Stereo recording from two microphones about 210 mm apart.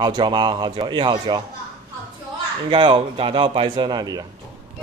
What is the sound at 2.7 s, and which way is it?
A man's voice, 20° right (ahead or behind).